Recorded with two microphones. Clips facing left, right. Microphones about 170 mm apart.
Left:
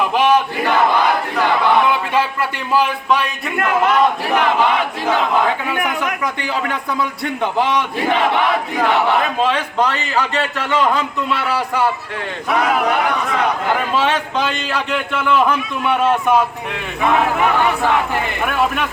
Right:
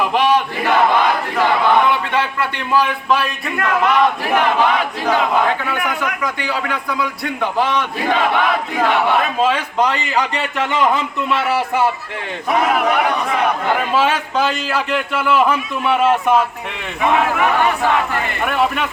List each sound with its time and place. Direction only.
2.7 s a man's voice: centre (ahead or behind)
6.2 s a man's voice: 20° left (ahead or behind)
9.4 s a man's voice: 10° right (ahead or behind)
11.4 s a man's voice: 25° right (ahead or behind)
13.9 s a man's voice: 10° right (ahead or behind)
18.4 s a man's voice: centre (ahead or behind)